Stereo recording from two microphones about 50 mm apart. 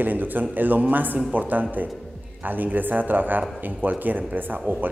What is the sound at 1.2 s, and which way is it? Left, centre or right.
Speech, right.